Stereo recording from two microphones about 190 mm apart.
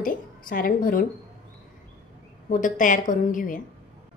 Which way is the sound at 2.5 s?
45° left (ahead or behind).